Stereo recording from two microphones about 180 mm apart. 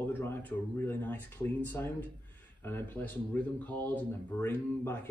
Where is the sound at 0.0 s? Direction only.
10° left (ahead or behind).